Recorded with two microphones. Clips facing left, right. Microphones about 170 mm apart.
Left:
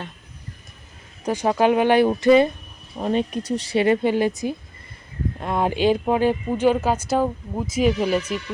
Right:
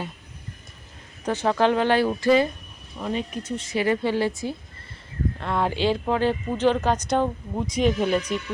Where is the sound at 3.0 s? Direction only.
45° left (ahead or behind).